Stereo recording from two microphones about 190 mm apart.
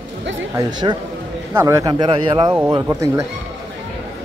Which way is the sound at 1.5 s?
15° right (ahead or behind).